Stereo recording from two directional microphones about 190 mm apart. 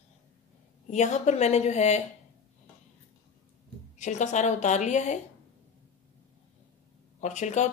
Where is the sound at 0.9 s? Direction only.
40° left (ahead or behind).